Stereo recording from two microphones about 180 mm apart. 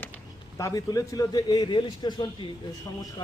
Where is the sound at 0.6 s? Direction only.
20° left (ahead or behind).